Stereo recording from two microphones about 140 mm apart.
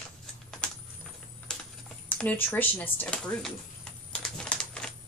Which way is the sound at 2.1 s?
10° left (ahead or behind).